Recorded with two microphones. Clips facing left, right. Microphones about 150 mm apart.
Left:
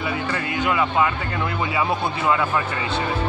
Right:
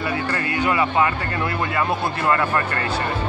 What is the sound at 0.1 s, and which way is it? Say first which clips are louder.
Speech: right 1 dB; centre (ahead or behind).